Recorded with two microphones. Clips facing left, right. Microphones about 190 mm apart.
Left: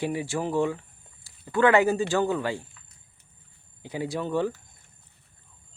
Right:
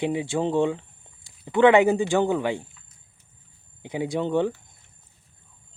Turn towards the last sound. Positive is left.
turn(degrees=-20)  # may be behind; listen again after turning